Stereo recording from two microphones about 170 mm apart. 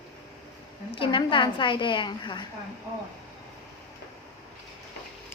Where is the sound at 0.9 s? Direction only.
30° left (ahead or behind).